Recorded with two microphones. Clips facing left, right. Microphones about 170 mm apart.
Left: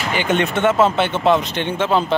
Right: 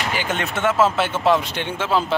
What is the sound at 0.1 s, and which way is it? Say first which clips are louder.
Speech: left 6 dB; 5° right (ahead or behind).